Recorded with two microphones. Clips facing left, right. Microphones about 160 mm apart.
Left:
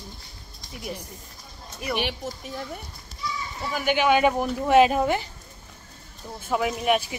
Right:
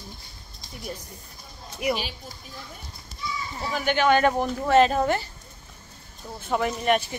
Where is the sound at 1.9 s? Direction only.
70° left (ahead or behind).